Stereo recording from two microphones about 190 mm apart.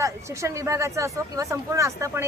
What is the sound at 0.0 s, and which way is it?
Speech, 15° right (ahead or behind).